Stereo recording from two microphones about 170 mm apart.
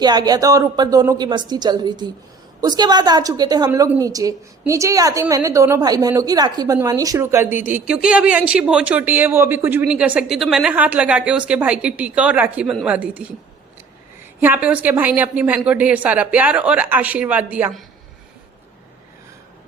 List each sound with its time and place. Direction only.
0.0 s a woman's voice: 25° right (ahead or behind); by 13.2 s 10° right (ahead or behind)
14.4 s speech: 10° right (ahead or behind)